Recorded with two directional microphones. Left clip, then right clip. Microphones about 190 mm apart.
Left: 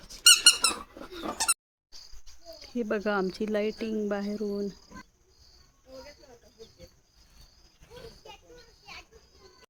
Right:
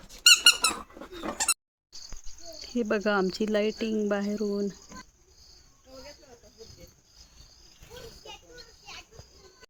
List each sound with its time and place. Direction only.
0.1 s squeak: 10° right (ahead or behind)
2.6 s speech: 30° right (ahead or behind)
7.9 s children playing: 65° right (ahead or behind)